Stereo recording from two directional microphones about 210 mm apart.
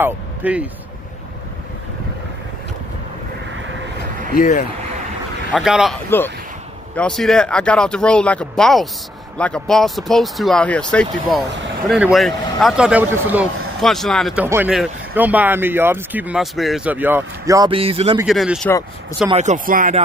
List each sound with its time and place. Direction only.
0.0 s speech: 5° right (ahead or behind)
4.4 s speech: 40° left (ahead or behind)
5.5 s speech: centre (ahead or behind)
6.0 s speech: 10° left (ahead or behind); by 18.1 s 25° right (ahead or behind)
18.2 s speech: centre (ahead or behind)
19.3 s speech: 35° right (ahead or behind)